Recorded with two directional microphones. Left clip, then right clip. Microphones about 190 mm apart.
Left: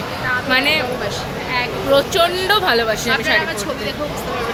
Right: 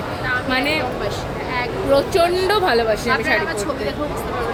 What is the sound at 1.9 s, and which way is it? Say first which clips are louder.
Speech: left 1 dB; 15° right (ahead or behind).